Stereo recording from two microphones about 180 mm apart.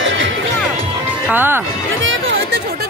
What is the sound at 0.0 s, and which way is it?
Music, 90° right.